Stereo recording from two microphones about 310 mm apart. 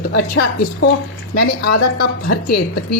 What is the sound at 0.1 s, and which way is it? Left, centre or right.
Speech, left.